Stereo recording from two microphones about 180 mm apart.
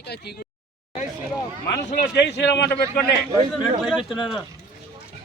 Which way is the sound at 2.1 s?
70° left (ahead or behind).